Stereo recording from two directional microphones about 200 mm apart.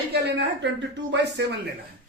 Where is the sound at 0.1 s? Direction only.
55° right (ahead or behind).